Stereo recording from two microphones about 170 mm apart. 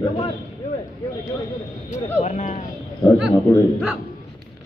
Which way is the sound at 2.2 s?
45° left (ahead or behind).